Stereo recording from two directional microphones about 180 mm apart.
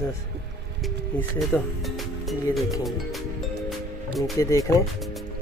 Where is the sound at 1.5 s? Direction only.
10° left (ahead or behind).